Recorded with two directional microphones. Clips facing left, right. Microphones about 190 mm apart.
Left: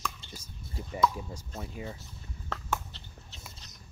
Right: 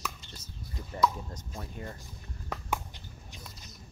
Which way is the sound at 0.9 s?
10° left (ahead or behind).